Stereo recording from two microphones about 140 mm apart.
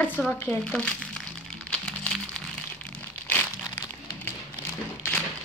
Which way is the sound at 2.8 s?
10° left (ahead or behind).